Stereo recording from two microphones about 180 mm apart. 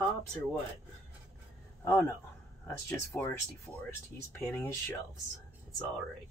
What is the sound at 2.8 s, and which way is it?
Speech, 10° left (ahead or behind).